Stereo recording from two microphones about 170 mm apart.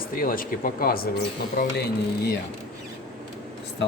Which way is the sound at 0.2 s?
55° left (ahead or behind).